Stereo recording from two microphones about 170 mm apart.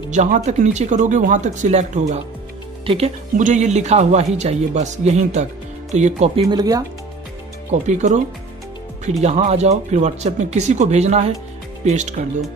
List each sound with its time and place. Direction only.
0.1 s speech: 45° right (ahead or behind)
3.3 s a man's voice: 45° right (ahead or behind)
6.5 s speech: 20° right (ahead or behind)
7.8 s speech: 45° right (ahead or behind)
9.2 s a man's voice: 40° right (ahead or behind)